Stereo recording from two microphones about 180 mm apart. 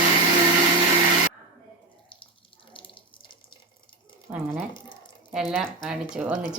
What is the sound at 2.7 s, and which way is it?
Water tap, 30° left (ahead or behind).